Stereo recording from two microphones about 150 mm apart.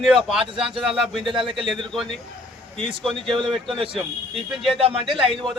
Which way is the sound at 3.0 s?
Centre (ahead or behind).